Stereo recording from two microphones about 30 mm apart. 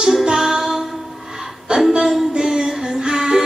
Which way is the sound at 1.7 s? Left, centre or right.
Right.